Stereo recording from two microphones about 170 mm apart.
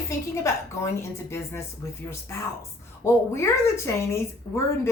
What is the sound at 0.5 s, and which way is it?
Speech, 15° left (ahead or behind).